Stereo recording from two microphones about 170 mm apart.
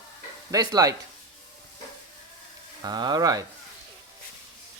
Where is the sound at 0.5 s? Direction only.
20° right (ahead or behind).